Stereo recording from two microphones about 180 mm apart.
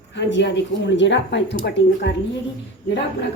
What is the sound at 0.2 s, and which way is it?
A woman's voice, 85° left.